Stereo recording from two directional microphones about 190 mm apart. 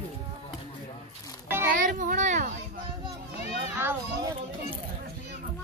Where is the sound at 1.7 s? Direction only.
45° right (ahead or behind).